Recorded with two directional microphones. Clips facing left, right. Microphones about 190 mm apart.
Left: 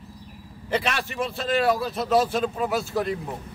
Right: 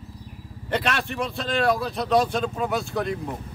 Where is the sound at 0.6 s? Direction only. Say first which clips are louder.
Right 1 dB; 5° left (ahead or behind).